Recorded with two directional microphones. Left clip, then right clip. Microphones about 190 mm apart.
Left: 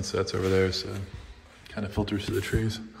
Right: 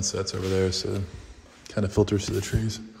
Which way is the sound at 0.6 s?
30° right (ahead or behind).